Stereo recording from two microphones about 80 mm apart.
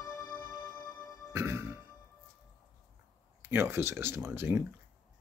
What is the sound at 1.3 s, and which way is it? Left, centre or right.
Music, right.